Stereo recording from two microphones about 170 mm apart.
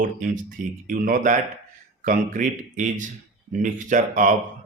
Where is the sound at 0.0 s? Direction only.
50° right (ahead or behind).